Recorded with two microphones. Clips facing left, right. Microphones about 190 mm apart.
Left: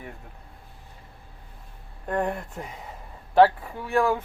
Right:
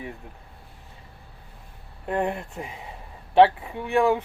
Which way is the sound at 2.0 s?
20° right (ahead or behind).